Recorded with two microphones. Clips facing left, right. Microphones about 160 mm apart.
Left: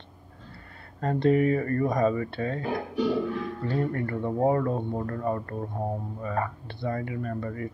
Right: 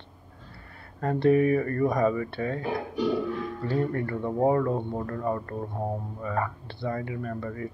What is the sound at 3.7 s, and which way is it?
Speech, 30° right (ahead or behind).